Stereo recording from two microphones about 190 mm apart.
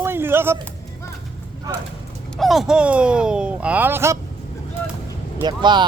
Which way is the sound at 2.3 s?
Centre (ahead or behind).